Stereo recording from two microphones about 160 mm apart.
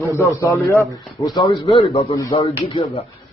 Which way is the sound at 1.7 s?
40° left (ahead or behind).